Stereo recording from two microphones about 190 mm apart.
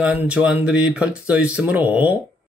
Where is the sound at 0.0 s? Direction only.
5° right (ahead or behind).